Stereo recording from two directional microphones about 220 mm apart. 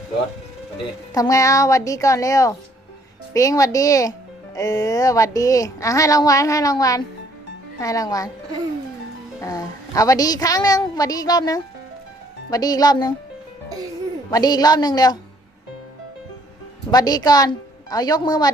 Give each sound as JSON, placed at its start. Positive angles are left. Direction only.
{"t": 1.1, "sound": "speech", "side_deg": 15}
{"t": 9.4, "sound": "a woman's voice", "side_deg": 15}
{"t": 14.3, "sound": "speech", "side_deg": 20}
{"t": 16.9, "sound": "speech", "side_deg": 15}